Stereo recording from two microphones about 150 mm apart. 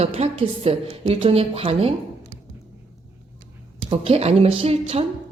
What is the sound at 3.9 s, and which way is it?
A woman's voice, 40° right (ahead or behind).